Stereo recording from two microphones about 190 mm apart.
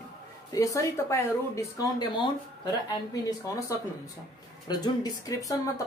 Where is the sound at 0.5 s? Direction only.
15° left (ahead or behind).